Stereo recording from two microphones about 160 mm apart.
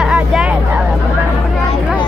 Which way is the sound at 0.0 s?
5° right (ahead or behind).